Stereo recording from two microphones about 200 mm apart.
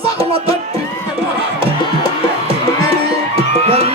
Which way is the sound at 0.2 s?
30° right (ahead or behind).